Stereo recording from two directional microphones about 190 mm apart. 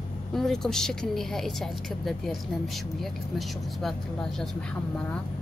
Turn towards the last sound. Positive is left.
turn(degrees=5)  # may be behind; listen again after turning